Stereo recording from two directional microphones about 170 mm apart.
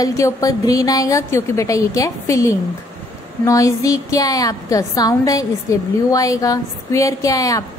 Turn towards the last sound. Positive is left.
turn(degrees=20)  # may be behind; listen again after turning